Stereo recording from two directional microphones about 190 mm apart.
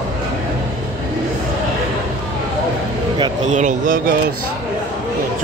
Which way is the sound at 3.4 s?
40° right (ahead or behind).